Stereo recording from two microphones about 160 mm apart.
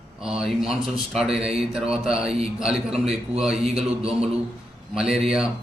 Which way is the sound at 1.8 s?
5° right (ahead or behind).